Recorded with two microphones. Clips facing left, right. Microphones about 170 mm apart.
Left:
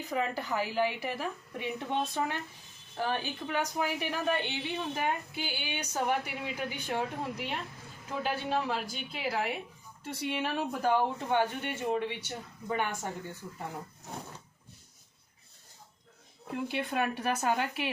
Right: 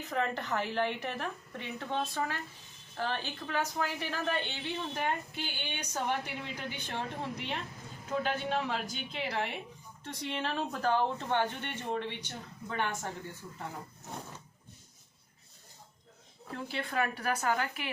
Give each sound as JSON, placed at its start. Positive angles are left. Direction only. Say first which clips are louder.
{"t": 0.0, "sound": "a woman's voice", "louder": "left 1 dB", "side_deg": 10}
{"t": 16.5, "sound": "speech", "louder": "left 4 dB", "side_deg": 15}